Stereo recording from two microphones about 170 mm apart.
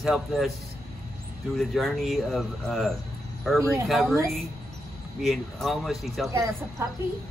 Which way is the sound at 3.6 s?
15° right (ahead or behind).